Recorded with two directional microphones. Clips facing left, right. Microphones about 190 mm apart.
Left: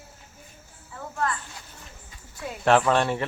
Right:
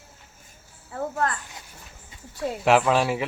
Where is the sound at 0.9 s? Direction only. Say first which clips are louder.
Right 3 dB; 50° right (ahead or behind).